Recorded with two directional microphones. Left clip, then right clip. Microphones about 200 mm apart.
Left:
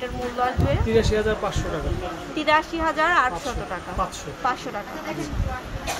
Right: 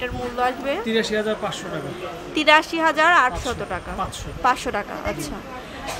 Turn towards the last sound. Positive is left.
turn(degrees=-25)  # may be behind; listen again after turning